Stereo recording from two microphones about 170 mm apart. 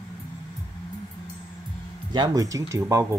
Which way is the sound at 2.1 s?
25° right (ahead or behind).